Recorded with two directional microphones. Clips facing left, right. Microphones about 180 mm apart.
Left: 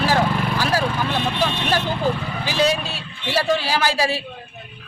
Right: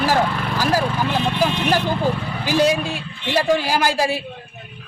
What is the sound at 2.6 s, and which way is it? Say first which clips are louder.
Speech: right 2 dB; 15° right (ahead or behind).